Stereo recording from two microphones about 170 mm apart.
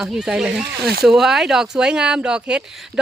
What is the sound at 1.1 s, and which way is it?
Speech, 5° right (ahead or behind).